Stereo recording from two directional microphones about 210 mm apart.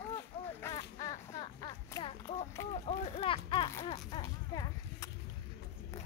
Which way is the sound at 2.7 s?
30° left (ahead or behind).